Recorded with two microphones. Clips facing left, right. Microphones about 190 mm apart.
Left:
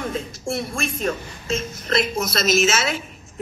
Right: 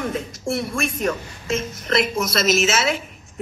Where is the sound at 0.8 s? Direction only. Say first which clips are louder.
Right 2 dB; 30° left (ahead or behind).